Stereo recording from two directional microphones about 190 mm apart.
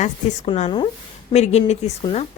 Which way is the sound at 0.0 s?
40° left (ahead or behind).